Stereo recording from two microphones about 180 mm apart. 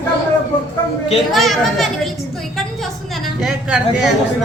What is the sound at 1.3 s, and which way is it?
Speech, centre (ahead or behind).